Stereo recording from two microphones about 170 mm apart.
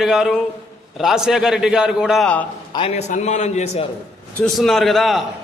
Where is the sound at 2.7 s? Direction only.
35° left (ahead or behind).